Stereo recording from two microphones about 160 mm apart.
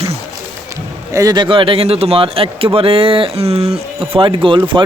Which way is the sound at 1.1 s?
25° right (ahead or behind).